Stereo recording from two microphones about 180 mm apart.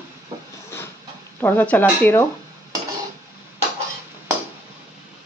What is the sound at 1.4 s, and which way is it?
Speech, 10° left (ahead or behind).